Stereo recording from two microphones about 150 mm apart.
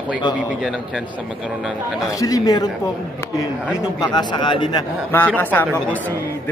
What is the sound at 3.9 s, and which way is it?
Speech, 30° left (ahead or behind).